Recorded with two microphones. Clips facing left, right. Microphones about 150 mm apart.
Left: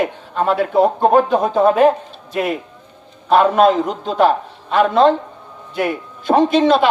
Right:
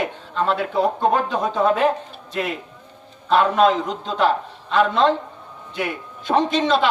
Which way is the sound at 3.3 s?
45° left (ahead or behind).